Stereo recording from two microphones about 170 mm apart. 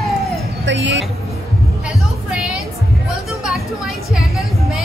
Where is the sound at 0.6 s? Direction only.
90° right.